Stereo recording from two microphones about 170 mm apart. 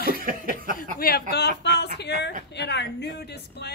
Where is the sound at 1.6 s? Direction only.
80° left.